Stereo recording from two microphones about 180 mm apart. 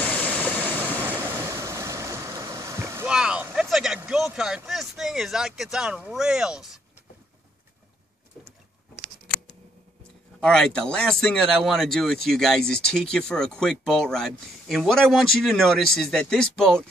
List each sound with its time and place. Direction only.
0.1 s vehicle: 5° left (ahead or behind)
1.0 s vehicle: 15° right (ahead or behind)
3.1 s speech: 5° right (ahead or behind)
10.4 s speech: 5° left (ahead or behind)